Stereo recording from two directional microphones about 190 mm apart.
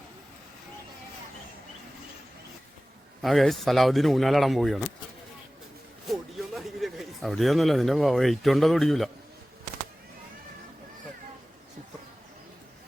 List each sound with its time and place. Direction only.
3.2 s speech: centre (ahead or behind)
6.1 s speech: centre (ahead or behind)